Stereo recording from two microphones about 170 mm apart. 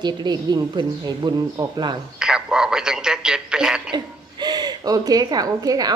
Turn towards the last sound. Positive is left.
turn(degrees=-20)  # may be behind; listen again after turning